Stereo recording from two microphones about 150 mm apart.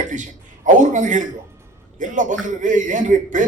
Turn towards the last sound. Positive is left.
turn(degrees=-60)  # may be behind; listen again after turning